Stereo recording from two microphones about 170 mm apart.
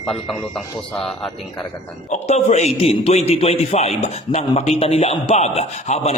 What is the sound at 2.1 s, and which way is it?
A man's voice, 40° left (ahead or behind).